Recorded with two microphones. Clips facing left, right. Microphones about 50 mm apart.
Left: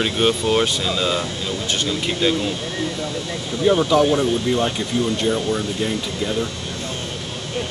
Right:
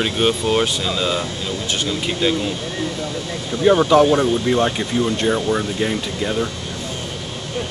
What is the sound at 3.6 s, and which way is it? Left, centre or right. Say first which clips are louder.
Speech: right 3 dB; right.